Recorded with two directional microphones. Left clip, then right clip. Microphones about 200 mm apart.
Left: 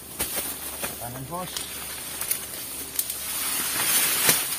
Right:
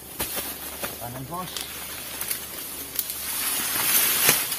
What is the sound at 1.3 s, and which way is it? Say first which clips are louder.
Speech: left 1 dB; 15° right (ahead or behind).